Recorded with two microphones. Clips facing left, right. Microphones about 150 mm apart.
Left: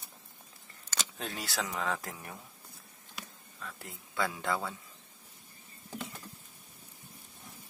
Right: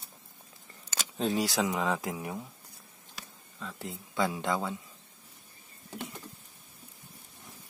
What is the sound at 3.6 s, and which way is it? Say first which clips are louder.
Speech: right 6 dB; 20° right (ahead or behind).